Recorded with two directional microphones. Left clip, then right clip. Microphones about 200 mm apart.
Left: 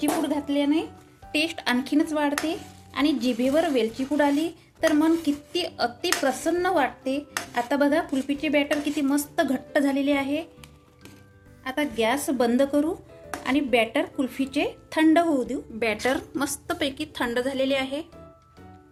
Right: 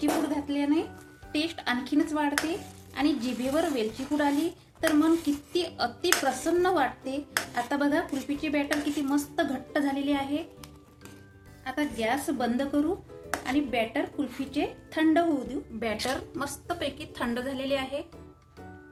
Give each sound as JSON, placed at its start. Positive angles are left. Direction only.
{"t": 0.0, "sound": "a sound", "side_deg": 35}
{"t": 1.3, "sound": "speech", "side_deg": 40}
{"t": 11.6, "sound": "a woman's voice", "side_deg": 35}